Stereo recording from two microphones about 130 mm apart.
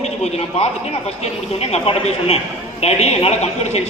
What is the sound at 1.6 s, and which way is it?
A man's voice, 55° left (ahead or behind).